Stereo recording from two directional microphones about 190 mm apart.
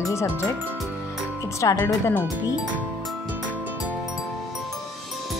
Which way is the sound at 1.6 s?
20° left (ahead or behind).